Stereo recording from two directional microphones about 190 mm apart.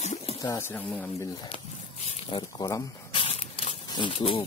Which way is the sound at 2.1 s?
25° left (ahead or behind).